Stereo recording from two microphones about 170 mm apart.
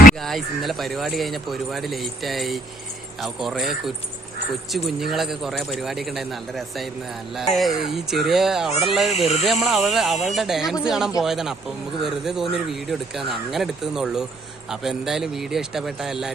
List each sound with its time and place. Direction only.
0.2 s speech: centre (ahead or behind)
9.1 s speech: 40° left (ahead or behind)
9.4 s speech: centre (ahead or behind)